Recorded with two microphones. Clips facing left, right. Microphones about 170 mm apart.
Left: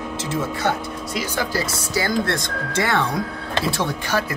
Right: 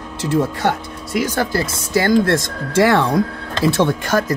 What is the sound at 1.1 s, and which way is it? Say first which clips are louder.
Speech: right 6 dB; 55° right (ahead or behind).